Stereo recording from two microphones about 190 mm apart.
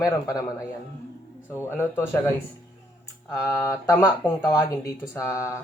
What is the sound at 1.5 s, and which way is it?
Speech, 10° left (ahead or behind).